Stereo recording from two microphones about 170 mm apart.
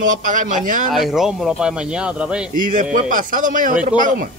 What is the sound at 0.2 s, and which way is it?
Speech, 50° right (ahead or behind).